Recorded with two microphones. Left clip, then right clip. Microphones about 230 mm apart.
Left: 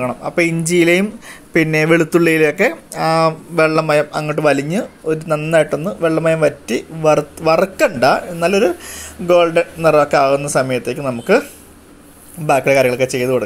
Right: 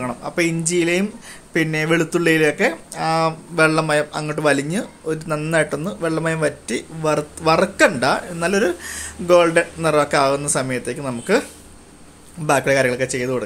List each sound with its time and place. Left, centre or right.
0.0 s speech: centre
12.4 s speech: centre